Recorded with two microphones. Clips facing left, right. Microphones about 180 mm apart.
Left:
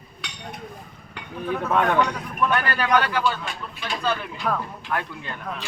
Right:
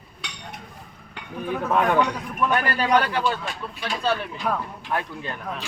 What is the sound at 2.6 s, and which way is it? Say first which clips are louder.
Speech: right 3 dB; 30° right (ahead or behind).